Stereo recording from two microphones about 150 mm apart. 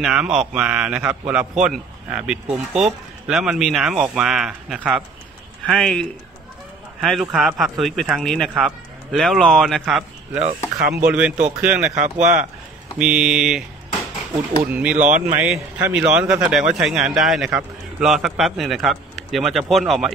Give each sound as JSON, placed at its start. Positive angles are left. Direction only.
{"t": 0.0, "sound": "a man's voice", "side_deg": -5}
{"t": 11.9, "sound": "speech", "side_deg": -50}
{"t": 12.9, "sound": "a man's voice", "side_deg": -5}
{"t": 15.0, "sound": "speech", "side_deg": -60}
{"t": 15.3, "sound": "a man's voice", "side_deg": -5}